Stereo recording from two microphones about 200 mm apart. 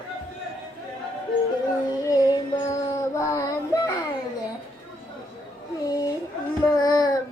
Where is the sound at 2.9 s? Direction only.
15° left (ahead or behind).